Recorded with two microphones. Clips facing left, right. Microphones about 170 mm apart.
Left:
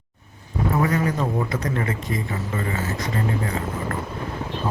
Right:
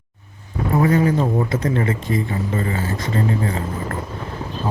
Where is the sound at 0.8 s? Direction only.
30° right (ahead or behind).